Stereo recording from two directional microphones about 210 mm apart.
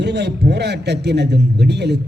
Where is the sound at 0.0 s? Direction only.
55° right (ahead or behind).